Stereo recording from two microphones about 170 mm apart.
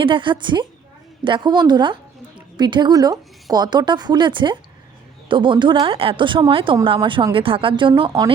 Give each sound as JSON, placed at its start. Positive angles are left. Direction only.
{"t": 0.0, "sound": "speech", "side_deg": -30}